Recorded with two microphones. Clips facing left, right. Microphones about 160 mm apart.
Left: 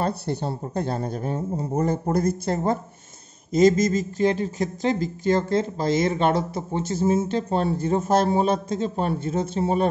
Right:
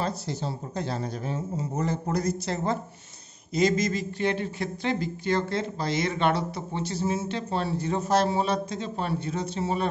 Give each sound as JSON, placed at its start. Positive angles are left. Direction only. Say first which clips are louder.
{"t": 0.0, "sound": "speech", "louder": "left 5 dB", "side_deg": 55}